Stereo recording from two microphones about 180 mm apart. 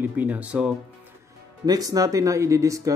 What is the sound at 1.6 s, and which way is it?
Speech, 20° right (ahead or behind).